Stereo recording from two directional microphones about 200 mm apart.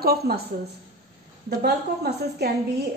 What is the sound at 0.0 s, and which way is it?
Speech, 50° right (ahead or behind).